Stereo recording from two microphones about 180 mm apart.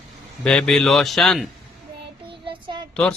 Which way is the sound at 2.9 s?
5° left (ahead or behind).